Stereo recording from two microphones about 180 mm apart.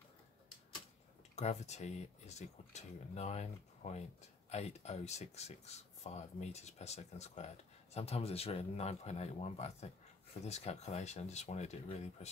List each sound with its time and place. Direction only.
1.3 s speech: 40° left (ahead or behind)